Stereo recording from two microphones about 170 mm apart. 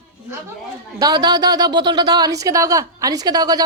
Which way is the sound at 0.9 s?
20° right (ahead or behind).